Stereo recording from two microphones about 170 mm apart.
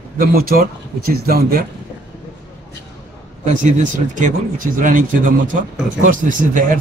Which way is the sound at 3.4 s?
45° right (ahead or behind).